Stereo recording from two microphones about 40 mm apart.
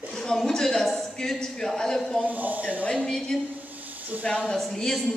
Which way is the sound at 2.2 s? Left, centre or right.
Right.